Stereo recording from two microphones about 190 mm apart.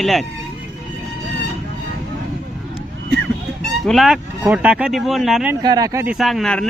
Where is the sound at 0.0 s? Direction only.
Centre (ahead or behind).